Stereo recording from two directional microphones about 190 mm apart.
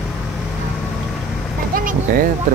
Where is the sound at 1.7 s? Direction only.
45° right (ahead or behind).